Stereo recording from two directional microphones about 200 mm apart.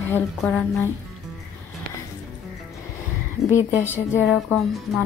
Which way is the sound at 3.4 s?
15° left (ahead or behind).